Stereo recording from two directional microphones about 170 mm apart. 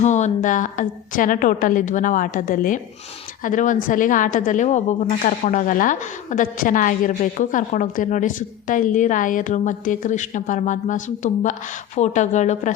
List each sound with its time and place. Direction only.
0.0 s a woman's voice: 45° left (ahead or behind)